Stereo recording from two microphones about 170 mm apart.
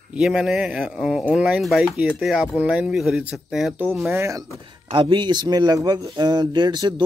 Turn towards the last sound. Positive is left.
turn(degrees=-25)  # may be behind; listen again after turning